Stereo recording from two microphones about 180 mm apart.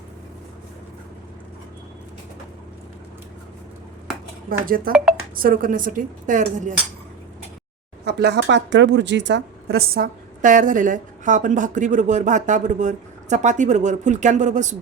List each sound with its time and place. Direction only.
4.9 s a woman's voice: 50° right (ahead or behind)
8.0 s a woman's voice: 70° right (ahead or behind); by 14.8 s 40° right (ahead or behind)